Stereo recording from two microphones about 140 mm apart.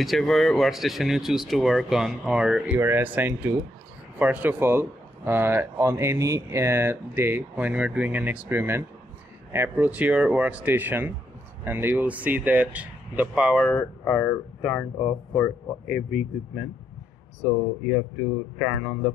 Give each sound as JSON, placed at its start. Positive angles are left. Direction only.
{"t": 0.0, "sound": "speech", "side_deg": 0}
{"t": 13.7, "sound": "speech", "side_deg": 10}